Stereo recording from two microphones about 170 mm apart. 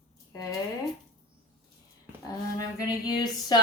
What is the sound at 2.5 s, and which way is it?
A woman's voice, 25° left (ahead or behind).